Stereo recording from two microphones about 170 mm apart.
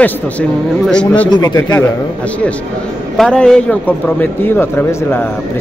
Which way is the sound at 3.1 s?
5° left (ahead or behind).